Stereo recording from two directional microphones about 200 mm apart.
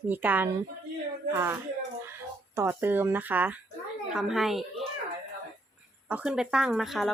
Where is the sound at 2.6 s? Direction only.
10° right (ahead or behind).